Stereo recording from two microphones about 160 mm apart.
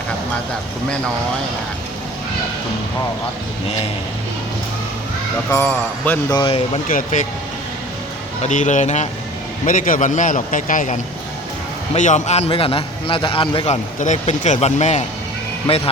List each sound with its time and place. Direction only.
5.5 s a man's voice: 15° left (ahead or behind)
6.8 s speech: 60° left (ahead or behind)
8.4 s a man's voice: 50° left (ahead or behind); by 13.7 s 30° left (ahead or behind)
13.7 s speech: 45° left (ahead or behind)